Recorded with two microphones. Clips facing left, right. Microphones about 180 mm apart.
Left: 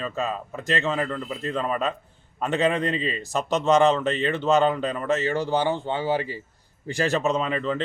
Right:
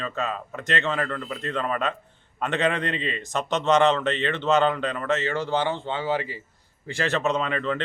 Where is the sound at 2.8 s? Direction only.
35° left (ahead or behind).